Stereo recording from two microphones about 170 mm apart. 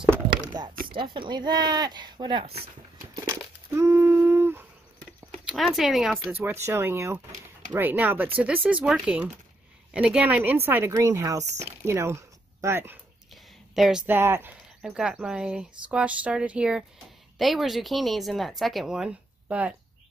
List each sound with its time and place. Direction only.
0.3 s a sound: 25° right (ahead or behind)
1.1 s speech: 25° right (ahead or behind)
3.3 s a sound: 15° right (ahead or behind)
5.3 s speech: centre (ahead or behind)
6.2 s a woman's voice: 15° right (ahead or behind)
11.4 s speech: 40° right (ahead or behind)
11.8 s speech: 15° right (ahead or behind)
13.7 s a woman's voice: 5° right (ahead or behind)